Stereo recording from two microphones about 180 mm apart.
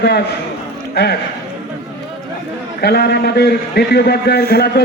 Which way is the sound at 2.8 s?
65° left (ahead or behind).